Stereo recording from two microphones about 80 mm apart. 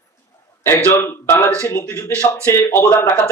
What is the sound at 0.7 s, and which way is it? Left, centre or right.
A man's voice, left.